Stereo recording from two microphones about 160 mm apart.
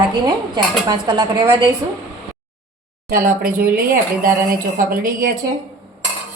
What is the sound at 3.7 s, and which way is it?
Speech, 60° right (ahead or behind).